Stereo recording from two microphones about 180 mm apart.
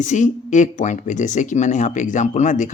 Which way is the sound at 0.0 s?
45° left (ahead or behind).